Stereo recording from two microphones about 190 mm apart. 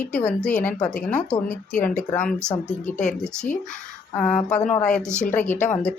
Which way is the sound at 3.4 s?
40° left (ahead or behind).